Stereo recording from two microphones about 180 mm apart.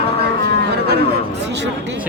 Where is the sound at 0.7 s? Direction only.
65° right (ahead or behind).